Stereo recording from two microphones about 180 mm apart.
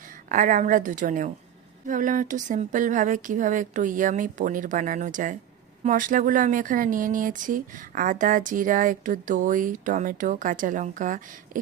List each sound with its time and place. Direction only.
0.3 s speech: 45° right (ahead or behind)